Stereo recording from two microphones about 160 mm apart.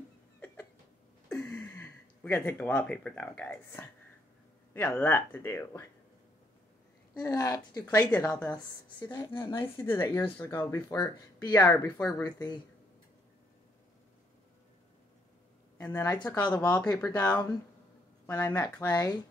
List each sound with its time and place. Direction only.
1.3 s speech: 10° left (ahead or behind)
7.2 s speech: 20° left (ahead or behind)
9.0 s speech: 20° left (ahead or behind)
15.8 s speech: 15° left (ahead or behind)
16.6 s speech: 20° left (ahead or behind)